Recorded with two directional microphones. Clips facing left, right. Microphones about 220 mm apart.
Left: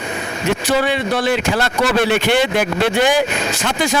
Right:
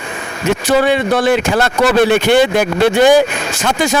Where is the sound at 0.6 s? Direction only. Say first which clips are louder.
Right 6 dB; 50° right (ahead or behind).